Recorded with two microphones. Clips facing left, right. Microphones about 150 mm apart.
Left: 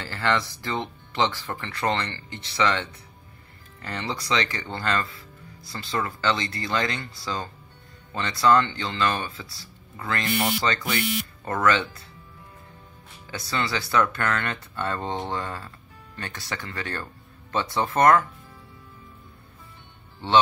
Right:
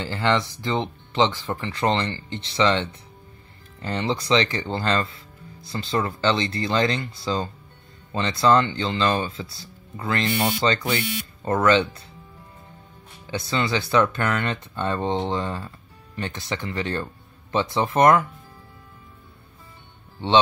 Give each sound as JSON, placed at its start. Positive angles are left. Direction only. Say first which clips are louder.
{"t": 0.0, "sound": "speech", "louder": "right 3 dB", "side_deg": -20}
{"t": 13.3, "sound": "speech", "louder": "right 4 dB", "side_deg": -25}